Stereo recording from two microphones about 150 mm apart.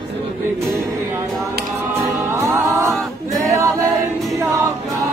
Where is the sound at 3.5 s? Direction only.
20° right (ahead or behind).